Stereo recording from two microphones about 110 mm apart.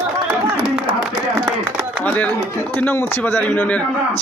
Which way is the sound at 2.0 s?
15° left (ahead or behind).